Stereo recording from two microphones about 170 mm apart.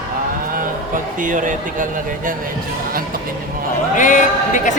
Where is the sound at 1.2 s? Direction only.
50° right (ahead or behind).